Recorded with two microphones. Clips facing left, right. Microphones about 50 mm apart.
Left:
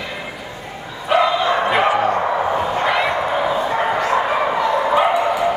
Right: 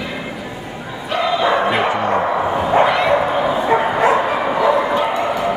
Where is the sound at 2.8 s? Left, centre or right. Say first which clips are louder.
Right 3 dB; centre.